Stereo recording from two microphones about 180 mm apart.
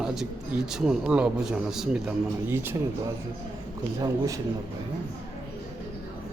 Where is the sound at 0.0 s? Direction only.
Centre (ahead or behind).